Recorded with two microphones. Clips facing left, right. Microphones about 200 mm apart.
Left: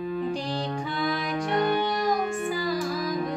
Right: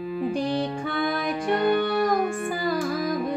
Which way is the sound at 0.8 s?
55° right (ahead or behind).